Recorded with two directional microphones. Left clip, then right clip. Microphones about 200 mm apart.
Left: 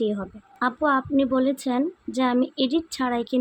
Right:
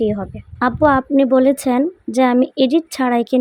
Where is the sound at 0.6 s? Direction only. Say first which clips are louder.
Right 8 dB; 35° right (ahead or behind).